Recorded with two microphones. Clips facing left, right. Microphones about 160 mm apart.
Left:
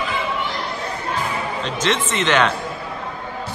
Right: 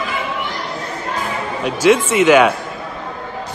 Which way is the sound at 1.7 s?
10° right (ahead or behind).